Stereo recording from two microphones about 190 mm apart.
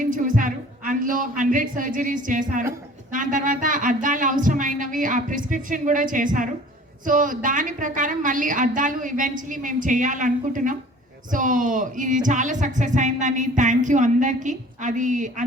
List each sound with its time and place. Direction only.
0.0 s a woman's voice: 45° right (ahead or behind)